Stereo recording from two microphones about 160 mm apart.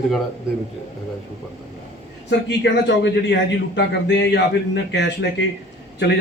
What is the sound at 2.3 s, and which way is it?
Speech, 90° left.